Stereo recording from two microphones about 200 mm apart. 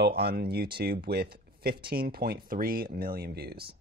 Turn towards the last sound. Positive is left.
turn(degrees=-50)  # may be behind; listen again after turning